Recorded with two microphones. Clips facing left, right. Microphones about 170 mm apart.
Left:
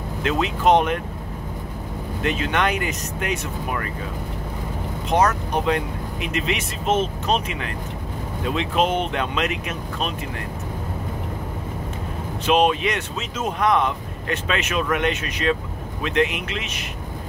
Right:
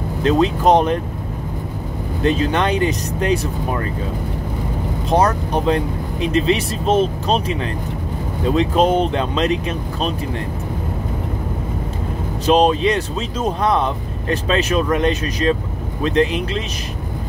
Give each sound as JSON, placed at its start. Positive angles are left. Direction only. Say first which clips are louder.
{"t": 0.2, "sound": "speech", "louder": "right 6 dB", "side_deg": -35}
{"t": 2.2, "sound": "speech", "louder": "right 5 dB", "side_deg": -35}
{"t": 5.1, "sound": "speech", "louder": "right 3 dB", "side_deg": -30}
{"t": 12.4, "sound": "speech", "louder": "right 4 dB", "side_deg": -35}